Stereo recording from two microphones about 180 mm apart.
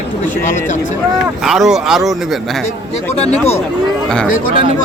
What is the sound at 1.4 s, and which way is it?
Speech, centre (ahead or behind).